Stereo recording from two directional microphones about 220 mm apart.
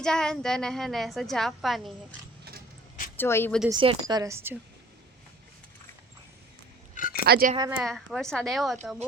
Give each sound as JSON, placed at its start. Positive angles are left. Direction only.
{"t": 0.0, "sound": "a woman's voice", "side_deg": 5}
{"t": 3.2, "sound": "speech", "side_deg": 10}
{"t": 3.7, "sound": "a woman's voice", "side_deg": -20}
{"t": 6.9, "sound": "a sound", "side_deg": 40}
{"t": 7.3, "sound": "speech", "side_deg": -45}
{"t": 7.5, "sound": "a woman's voice", "side_deg": -15}
{"t": 7.8, "sound": "a woman's voice", "side_deg": 0}